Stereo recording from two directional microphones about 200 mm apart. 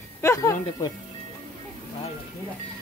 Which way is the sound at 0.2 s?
15° left (ahead or behind).